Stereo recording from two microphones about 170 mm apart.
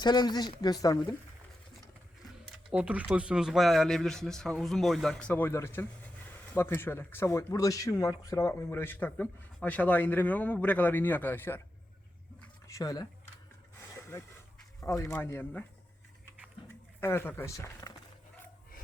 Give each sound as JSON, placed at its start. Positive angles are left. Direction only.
{"t": 0.0, "sound": "speech", "side_deg": 25}
{"t": 2.6, "sound": "speech", "side_deg": -5}
{"t": 12.6, "sound": "speech", "side_deg": 20}
{"t": 14.8, "sound": "speech", "side_deg": 15}
{"t": 17.0, "sound": "speech", "side_deg": 15}